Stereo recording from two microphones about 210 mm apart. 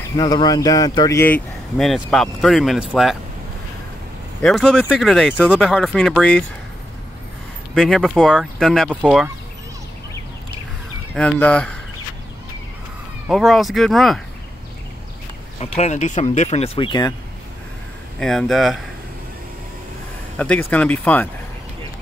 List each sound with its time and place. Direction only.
0.1 s speech: 20° left (ahead or behind); by 3.2 s centre (ahead or behind)
4.4 s speech: centre (ahead or behind)
7.7 s speech: centre (ahead or behind)
11.1 s speech: 5° left (ahead or behind)
13.3 s speech: centre (ahead or behind)
15.6 s speech: 30° left (ahead or behind)
18.2 s speech: centre (ahead or behind)
20.3 s speech: 5° left (ahead or behind)